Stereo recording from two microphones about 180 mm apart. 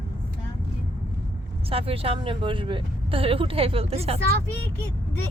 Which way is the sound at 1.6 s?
30° right (ahead or behind).